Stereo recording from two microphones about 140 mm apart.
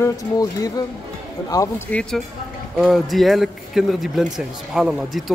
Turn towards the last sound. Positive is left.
turn(degrees=-5)  # may be behind; listen again after turning